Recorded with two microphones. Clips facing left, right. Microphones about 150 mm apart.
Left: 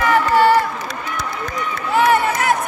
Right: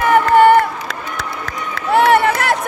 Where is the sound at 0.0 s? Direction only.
50° right (ahead or behind).